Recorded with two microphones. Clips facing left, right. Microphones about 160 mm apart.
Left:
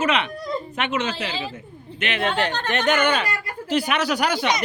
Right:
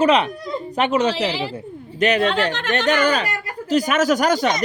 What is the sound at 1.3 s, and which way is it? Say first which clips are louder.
Speech: right 5 dB; 80° right.